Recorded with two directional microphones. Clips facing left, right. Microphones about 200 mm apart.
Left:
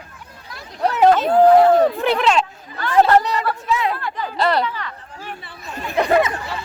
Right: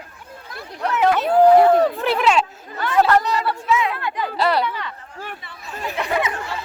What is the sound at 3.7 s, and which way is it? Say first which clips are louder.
Speech: right 1 dB; 35° left (ahead or behind).